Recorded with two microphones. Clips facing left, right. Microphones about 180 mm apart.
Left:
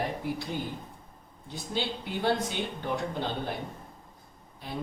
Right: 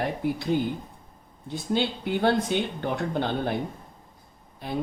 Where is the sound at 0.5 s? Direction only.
55° right (ahead or behind).